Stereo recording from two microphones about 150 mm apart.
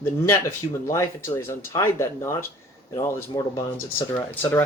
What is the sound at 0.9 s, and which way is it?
Speech, 20° left (ahead or behind).